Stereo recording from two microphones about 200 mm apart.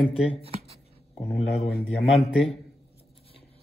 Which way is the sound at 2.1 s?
Centre (ahead or behind).